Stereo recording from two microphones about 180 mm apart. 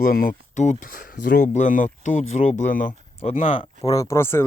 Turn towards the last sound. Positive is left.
turn(degrees=15)  # may be behind; listen again after turning